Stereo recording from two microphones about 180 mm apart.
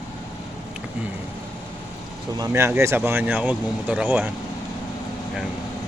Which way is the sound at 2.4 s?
15° right (ahead or behind).